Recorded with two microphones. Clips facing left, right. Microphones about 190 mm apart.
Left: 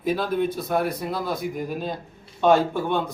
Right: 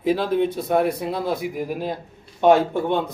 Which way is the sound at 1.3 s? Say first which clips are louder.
Right 2 dB; 65° right (ahead or behind).